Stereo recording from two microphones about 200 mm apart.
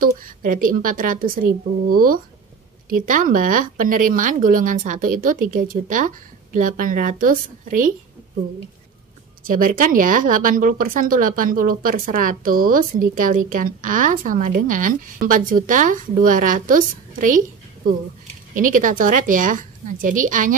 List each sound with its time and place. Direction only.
0.0 s speech: 45° right (ahead or behind)
2.9 s speech: 45° right (ahead or behind)
9.5 s speech: 40° right (ahead or behind)
18.5 s speech: 40° right (ahead or behind)